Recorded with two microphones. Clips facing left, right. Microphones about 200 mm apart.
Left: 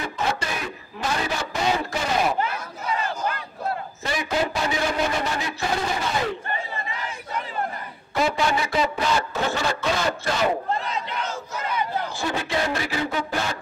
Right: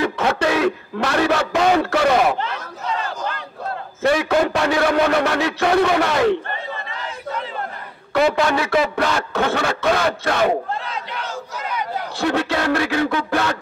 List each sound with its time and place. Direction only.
0.0 s a sound: 65° right (ahead or behind)
4.0 s a man's voice: 65° right (ahead or behind)
8.1 s speech: 70° right (ahead or behind)
12.2 s a man's voice: 65° right (ahead or behind)